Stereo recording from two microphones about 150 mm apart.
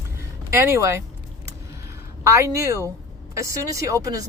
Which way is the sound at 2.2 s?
20° right (ahead or behind).